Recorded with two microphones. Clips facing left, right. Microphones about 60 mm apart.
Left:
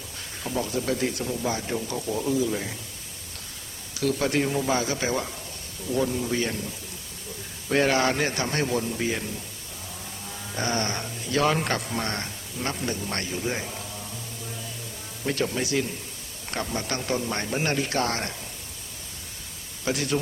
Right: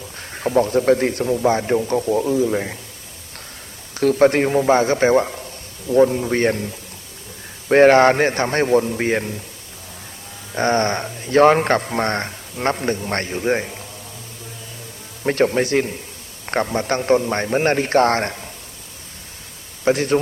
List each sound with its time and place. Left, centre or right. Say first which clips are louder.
0.2 s a man's voice: right 12 dB; right
3.9 s a man's voice: right 10 dB; right
7.7 s a man's voice: right 11 dB; right
10.5 s a man's voice: right 10 dB; right
15.2 s a man's voice: right 9 dB; right
19.8 s speech: right 10 dB; right